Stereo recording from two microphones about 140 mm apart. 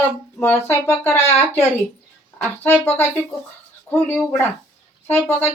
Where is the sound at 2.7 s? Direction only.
15° left (ahead or behind).